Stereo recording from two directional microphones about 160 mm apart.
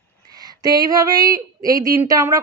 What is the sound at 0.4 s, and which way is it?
Speech, 25° right (ahead or behind).